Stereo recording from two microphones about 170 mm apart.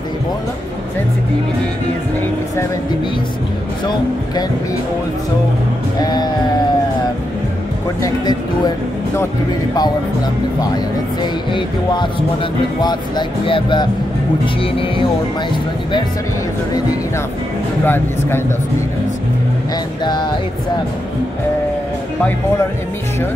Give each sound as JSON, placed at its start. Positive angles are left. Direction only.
{"t": 5.9, "sound": "speech", "side_deg": 25}
{"t": 8.0, "sound": "speech", "side_deg": 20}
{"t": 13.5, "sound": "speech", "side_deg": 30}
{"t": 17.8, "sound": "speech", "side_deg": 10}